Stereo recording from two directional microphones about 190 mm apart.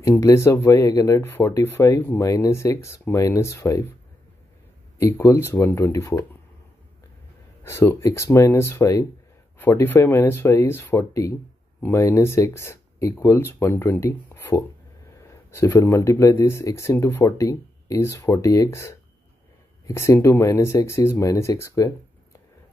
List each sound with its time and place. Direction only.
0.0 s speech: 15° left (ahead or behind)
4.9 s speech: 15° left (ahead or behind)
7.6 s speech: 15° left (ahead or behind)